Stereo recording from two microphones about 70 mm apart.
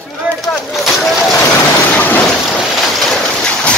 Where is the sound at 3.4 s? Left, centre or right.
Centre.